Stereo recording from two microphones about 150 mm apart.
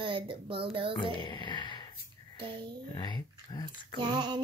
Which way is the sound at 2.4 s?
35° right (ahead or behind).